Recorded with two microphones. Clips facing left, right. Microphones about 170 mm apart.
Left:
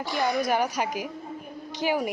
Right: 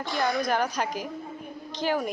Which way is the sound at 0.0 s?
5° left (ahead or behind).